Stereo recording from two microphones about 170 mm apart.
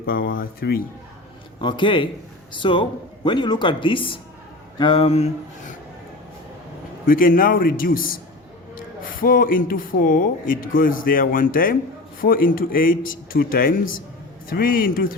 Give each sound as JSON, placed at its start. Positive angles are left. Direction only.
{"t": 0.0, "sound": "speech", "side_deg": 60}
{"t": 1.6, "sound": "speech", "side_deg": 30}
{"t": 4.8, "sound": "a sound", "side_deg": 30}
{"t": 7.1, "sound": "speech", "side_deg": 55}